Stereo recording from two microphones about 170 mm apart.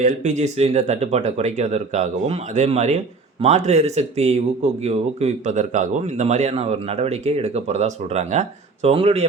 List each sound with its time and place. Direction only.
0.0 s speech: 45° right (ahead or behind)